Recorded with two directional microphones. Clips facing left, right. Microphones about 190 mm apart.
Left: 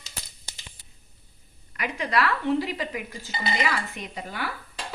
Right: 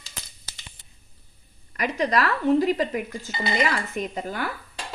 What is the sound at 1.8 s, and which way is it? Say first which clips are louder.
A woman's voice: right 3 dB; 40° right (ahead or behind).